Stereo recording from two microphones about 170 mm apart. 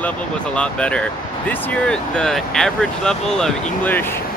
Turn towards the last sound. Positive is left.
turn(degrees=5)  # may be behind; listen again after turning